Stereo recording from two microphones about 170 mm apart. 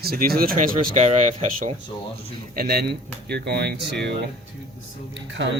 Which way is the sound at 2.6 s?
65° right (ahead or behind).